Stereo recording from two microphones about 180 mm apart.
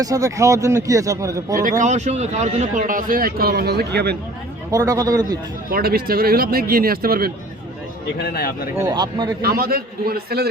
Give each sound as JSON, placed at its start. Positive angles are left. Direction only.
{"t": 0.0, "sound": "a man's voice", "side_deg": -20}
{"t": 1.8, "sound": "speech", "side_deg": -40}
{"t": 4.7, "sound": "speech", "side_deg": -20}
{"t": 5.7, "sound": "speech", "side_deg": -55}
{"t": 8.2, "sound": "a man's voice", "side_deg": 55}
{"t": 8.7, "sound": "speech", "side_deg": -20}
{"t": 9.4, "sound": "speech", "side_deg": -55}